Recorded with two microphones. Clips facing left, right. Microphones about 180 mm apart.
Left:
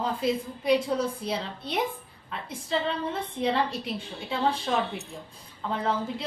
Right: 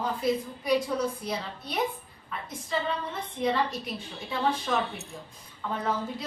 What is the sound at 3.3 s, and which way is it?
Speech, 30° left (ahead or behind).